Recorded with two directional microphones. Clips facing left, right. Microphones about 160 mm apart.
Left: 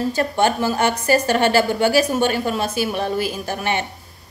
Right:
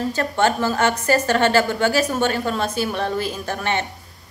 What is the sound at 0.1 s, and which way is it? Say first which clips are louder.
A woman's voice: left 1 dB; 15° left (ahead or behind).